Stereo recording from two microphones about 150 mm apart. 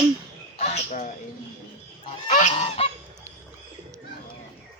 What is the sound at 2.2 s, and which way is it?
Goose, 50° left (ahead or behind).